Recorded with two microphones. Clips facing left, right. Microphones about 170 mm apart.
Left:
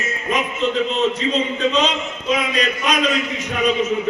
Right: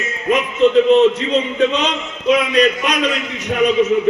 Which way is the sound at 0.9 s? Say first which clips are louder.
Right 8 dB; 60° right (ahead or behind).